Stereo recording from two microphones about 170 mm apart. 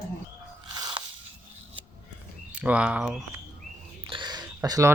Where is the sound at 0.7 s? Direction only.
25° right (ahead or behind).